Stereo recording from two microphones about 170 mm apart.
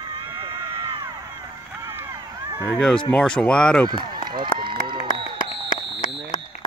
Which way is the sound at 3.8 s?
25° right (ahead or behind).